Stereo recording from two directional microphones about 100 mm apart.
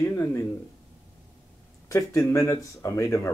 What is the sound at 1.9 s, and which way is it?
Speech, 30° left (ahead or behind).